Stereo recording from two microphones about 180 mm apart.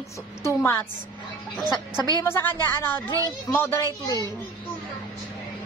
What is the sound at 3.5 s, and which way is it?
Speech, 15° left (ahead or behind).